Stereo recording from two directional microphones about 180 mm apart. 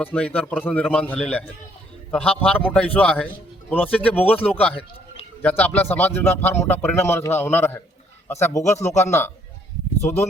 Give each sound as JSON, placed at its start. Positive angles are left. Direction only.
{"t": 0.0, "sound": "a man's voice", "side_deg": 10}
{"t": 4.7, "sound": "a sound", "side_deg": 30}
{"t": 5.4, "sound": "a man's voice", "side_deg": 10}